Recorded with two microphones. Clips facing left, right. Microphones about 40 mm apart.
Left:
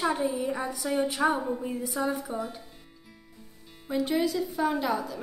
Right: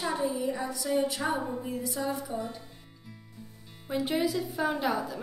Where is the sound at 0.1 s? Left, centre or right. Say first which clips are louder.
Left 2 dB; left.